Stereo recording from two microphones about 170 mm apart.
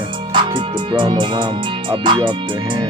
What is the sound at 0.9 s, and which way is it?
Speech, 25° right (ahead or behind).